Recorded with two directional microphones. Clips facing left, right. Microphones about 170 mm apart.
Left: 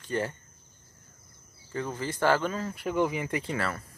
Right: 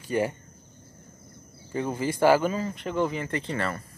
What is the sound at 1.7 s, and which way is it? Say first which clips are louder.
Speech: right 5 dB; 15° right (ahead or behind).